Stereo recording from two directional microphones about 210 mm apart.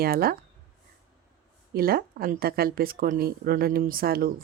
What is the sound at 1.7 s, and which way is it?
A woman's voice, 45° right (ahead or behind).